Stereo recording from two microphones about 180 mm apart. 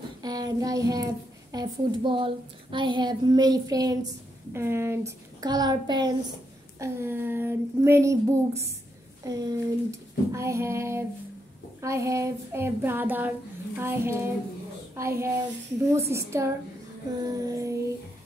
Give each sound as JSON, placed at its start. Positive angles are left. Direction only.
{"t": 0.2, "sound": "child singing", "side_deg": -20}
{"t": 1.5, "sound": "a woman's voice", "side_deg": -25}
{"t": 6.8, "sound": "child singing", "side_deg": -15}
{"t": 17.2, "sound": "a woman's voice", "side_deg": -20}